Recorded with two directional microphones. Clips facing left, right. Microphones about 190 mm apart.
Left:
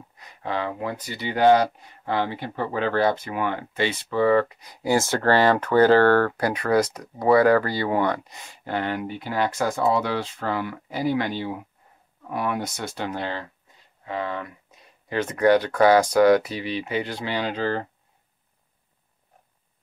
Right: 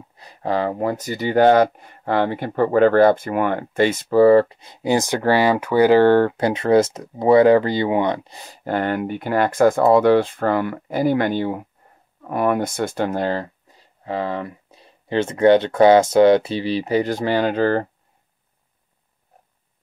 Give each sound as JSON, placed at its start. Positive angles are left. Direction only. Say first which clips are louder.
{"t": 0.2, "sound": "speech", "louder": "right 6 dB", "side_deg": -35}